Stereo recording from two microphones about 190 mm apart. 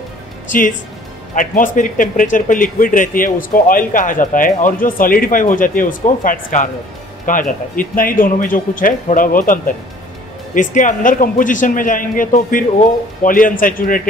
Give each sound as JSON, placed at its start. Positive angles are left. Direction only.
{"t": 0.5, "sound": "a man's voice", "side_deg": 45}